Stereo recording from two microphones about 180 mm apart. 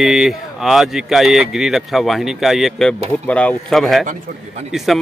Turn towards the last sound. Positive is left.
turn(degrees=-40)  # may be behind; listen again after turning